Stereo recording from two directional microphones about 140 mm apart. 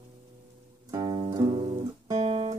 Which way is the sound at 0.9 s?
30° right (ahead or behind).